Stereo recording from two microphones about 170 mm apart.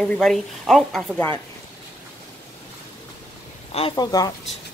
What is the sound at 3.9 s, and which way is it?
Speech, 20° left (ahead or behind).